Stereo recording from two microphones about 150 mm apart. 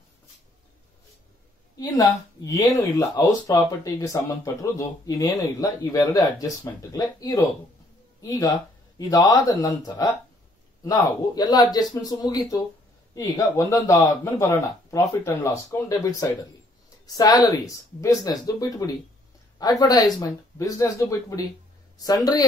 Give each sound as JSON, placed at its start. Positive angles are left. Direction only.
{"t": 1.8, "sound": "speech", "side_deg": 25}